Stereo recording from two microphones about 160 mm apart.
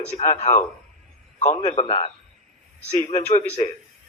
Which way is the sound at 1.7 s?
40° left (ahead or behind).